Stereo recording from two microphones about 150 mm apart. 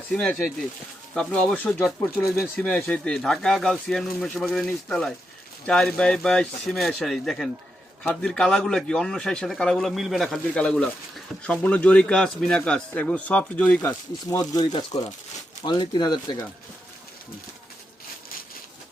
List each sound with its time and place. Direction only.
0.1 s a man's voice: 5° left (ahead or behind)
14.3 s speech: 25° left (ahead or behind)